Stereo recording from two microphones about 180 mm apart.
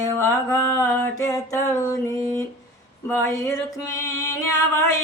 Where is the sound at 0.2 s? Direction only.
15° left (ahead or behind).